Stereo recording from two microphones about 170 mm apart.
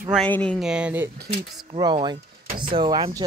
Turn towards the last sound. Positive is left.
turn(degrees=-25)  # may be behind; listen again after turning